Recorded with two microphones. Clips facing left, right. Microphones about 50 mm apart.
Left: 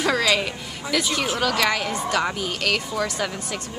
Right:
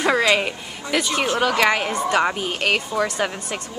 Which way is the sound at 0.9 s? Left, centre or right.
Right.